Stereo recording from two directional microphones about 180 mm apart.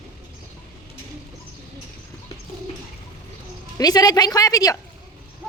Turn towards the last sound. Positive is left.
turn(degrees=20)  # may be behind; listen again after turning